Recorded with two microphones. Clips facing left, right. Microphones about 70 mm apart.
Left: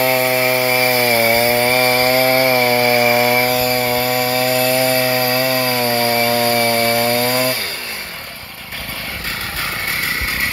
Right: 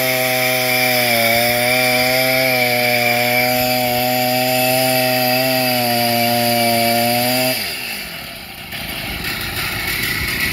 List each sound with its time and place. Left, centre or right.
0.2 s chainsaw: left
0.7 s chainsaw: centre
2.7 s chainsaw: left
3.5 s chainsaw: left